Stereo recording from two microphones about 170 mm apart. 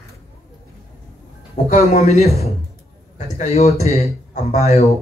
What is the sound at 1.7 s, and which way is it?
A man's voice, 40° left (ahead or behind).